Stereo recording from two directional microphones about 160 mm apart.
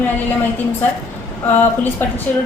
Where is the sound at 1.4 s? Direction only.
10° left (ahead or behind).